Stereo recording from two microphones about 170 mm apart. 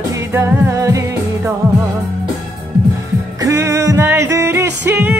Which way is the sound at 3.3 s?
15° right (ahead or behind).